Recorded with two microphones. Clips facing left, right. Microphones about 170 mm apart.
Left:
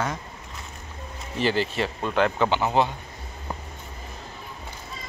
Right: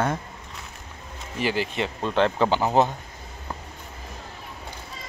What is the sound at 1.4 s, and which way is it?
Speech, 10° right (ahead or behind).